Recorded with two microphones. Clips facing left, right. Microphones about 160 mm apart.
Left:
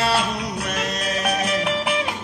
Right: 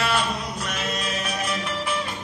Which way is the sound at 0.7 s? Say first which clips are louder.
Left 2 dB; 65° left (ahead or behind).